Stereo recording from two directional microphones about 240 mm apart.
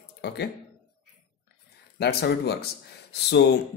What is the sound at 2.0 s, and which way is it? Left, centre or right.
Speech, left.